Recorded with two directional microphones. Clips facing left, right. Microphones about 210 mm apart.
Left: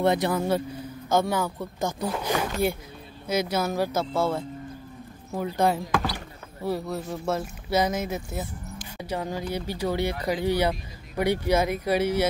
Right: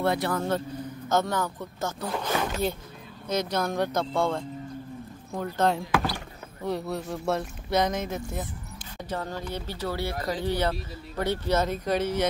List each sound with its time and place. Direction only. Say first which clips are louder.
0.0 s speech: left 3 dB; 20° left (ahead or behind)